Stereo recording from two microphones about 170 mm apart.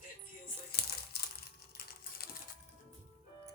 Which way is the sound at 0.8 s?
70° left (ahead or behind).